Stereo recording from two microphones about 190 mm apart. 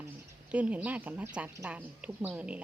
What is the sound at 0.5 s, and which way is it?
A woman's voice, 5° right (ahead or behind).